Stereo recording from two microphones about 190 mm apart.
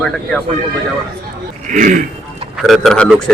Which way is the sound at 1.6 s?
45° right (ahead or behind).